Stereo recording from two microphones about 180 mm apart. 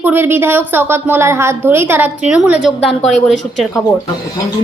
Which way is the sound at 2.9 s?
40° left (ahead or behind).